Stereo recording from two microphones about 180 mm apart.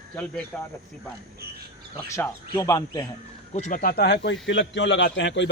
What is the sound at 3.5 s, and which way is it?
A man's voice, 45° left (ahead or behind).